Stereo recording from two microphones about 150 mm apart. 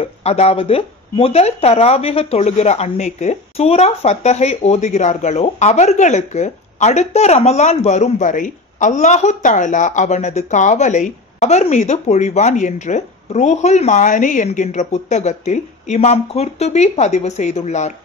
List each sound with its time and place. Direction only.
0.0 s speech: 45° left (ahead or behind)